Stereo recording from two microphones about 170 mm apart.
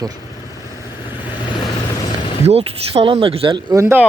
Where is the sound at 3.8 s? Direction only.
15° right (ahead or behind).